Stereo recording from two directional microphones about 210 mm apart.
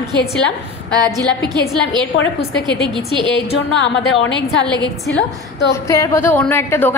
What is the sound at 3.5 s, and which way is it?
A woman's voice, 60° left (ahead or behind).